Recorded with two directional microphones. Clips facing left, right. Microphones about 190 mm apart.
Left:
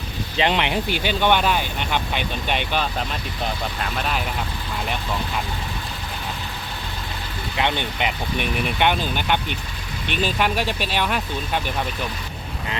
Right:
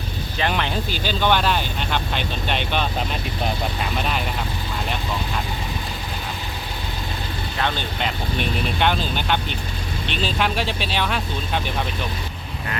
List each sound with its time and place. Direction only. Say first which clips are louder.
0.3 s speech: left 3 dB; 20° left (ahead or behind)
0.9 s speech: left 2 dB; 65° left (ahead or behind)
1.2 s speech: even; 15° left (ahead or behind)
3.9 s speech: even; centre (ahead or behind)
7.6 s speech: left 2 dB; 20° left (ahead or behind)